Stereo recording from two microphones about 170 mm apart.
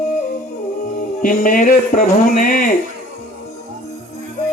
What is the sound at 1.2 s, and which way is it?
Speech, 55° left (ahead or behind).